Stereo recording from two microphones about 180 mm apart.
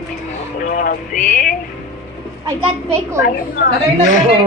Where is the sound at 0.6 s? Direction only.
50° left (ahead or behind).